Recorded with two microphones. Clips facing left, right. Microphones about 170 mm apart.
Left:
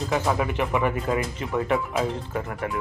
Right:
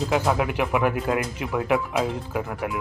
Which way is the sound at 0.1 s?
5° right (ahead or behind).